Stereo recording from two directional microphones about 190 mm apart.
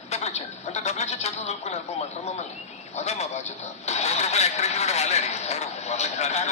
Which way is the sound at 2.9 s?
35° left (ahead or behind).